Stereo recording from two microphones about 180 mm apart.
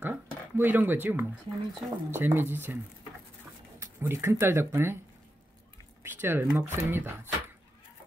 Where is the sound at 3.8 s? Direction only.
15° right (ahead or behind).